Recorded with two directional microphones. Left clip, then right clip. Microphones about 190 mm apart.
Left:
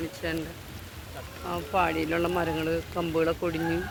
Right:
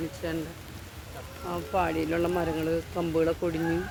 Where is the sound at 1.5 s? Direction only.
30° right (ahead or behind).